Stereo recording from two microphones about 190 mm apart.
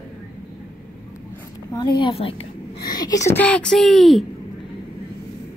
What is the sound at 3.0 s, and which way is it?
Speech, 15° left (ahead or behind).